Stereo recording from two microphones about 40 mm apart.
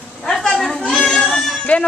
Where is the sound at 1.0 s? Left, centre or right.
Left.